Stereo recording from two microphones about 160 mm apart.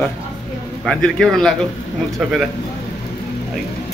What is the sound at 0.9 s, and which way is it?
Speech, 5° left (ahead or behind).